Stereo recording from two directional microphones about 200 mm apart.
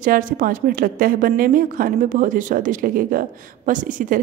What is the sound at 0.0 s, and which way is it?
A woman's voice, 45° right (ahead or behind).